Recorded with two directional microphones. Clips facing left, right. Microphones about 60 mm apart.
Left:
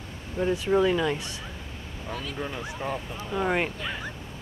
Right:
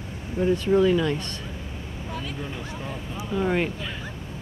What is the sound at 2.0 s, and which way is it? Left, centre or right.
Speech, centre.